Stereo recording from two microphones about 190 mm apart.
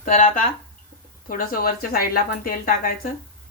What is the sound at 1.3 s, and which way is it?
Speech, 50° left (ahead or behind).